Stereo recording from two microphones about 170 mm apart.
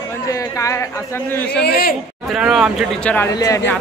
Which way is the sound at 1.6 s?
65° left (ahead or behind).